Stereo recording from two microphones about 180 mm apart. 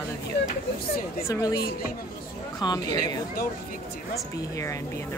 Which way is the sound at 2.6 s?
20° left (ahead or behind).